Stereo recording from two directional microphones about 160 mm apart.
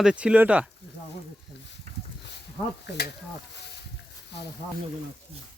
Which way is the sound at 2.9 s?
90° left.